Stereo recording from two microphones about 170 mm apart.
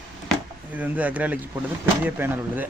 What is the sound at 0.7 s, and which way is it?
Speech, 10° right (ahead or behind).